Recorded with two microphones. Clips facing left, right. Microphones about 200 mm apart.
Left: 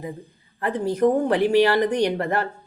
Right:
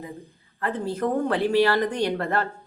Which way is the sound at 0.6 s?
15° left (ahead or behind).